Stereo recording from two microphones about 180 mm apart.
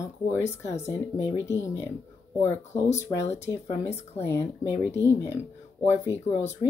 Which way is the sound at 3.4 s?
15° left (ahead or behind).